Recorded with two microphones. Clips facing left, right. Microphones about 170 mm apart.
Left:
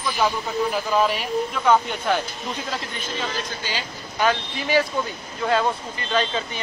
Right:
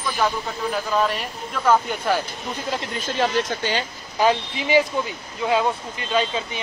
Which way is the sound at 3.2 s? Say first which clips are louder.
Right 9 dB; 65° right (ahead or behind).